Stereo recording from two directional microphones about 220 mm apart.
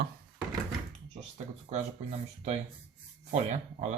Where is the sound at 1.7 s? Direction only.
30° right (ahead or behind).